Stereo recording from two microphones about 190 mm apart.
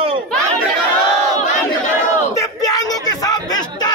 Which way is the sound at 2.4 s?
20° left (ahead or behind).